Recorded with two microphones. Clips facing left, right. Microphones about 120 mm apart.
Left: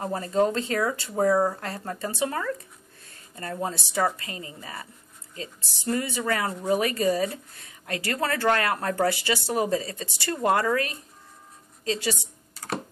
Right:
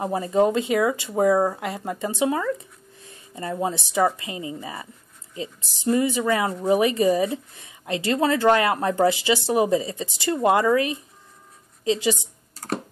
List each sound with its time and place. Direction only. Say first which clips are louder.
0.0 s a woman's voice: right 4 dB; 15° right (ahead or behind)